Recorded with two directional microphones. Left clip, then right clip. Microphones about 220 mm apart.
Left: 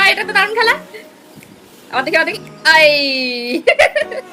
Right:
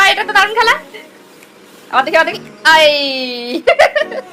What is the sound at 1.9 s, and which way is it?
Speech, 15° left (ahead or behind).